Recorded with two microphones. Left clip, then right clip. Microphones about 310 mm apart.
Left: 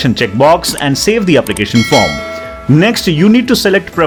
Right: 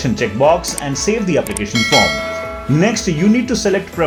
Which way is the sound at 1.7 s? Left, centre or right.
Centre.